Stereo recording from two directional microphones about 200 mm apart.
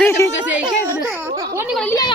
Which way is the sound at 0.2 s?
15° left (ahead or behind).